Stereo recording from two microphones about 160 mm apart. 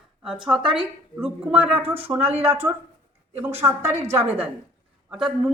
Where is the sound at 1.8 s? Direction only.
35° right (ahead or behind).